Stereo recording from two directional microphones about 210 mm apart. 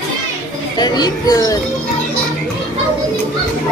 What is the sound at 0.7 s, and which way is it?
Speech, 20° left (ahead or behind).